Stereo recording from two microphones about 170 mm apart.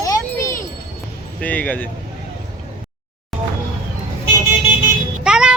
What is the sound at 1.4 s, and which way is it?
Speech, 10° left (ahead or behind).